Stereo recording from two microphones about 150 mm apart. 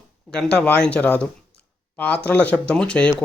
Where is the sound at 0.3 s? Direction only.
5° left (ahead or behind).